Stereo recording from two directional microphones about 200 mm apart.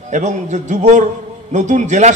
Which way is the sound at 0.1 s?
35° right (ahead or behind).